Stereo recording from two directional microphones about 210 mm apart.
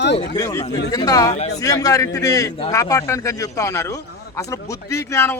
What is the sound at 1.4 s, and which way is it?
Speech, 30° left (ahead or behind).